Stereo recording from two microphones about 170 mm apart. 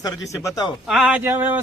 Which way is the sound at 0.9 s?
5° right (ahead or behind).